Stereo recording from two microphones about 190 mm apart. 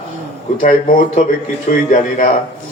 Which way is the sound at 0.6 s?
45° left (ahead or behind).